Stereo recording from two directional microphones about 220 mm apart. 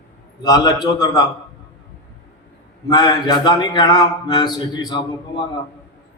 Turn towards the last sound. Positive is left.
turn(degrees=20)  # may be behind; listen again after turning